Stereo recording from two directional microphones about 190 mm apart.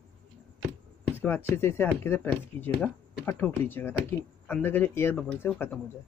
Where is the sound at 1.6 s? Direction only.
10° left (ahead or behind).